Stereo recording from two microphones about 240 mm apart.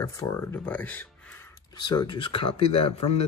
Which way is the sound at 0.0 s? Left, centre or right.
Centre.